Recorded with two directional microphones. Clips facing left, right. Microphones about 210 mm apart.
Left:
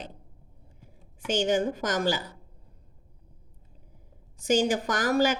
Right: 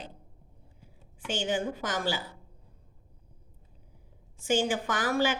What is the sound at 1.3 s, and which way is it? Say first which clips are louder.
Speech: left 5 dB; 45° left (ahead or behind).